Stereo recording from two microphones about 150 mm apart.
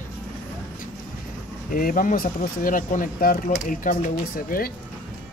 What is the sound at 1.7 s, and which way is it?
Speech, 70° left (ahead or behind).